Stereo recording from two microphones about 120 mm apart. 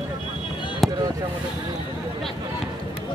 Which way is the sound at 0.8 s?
Centre (ahead or behind).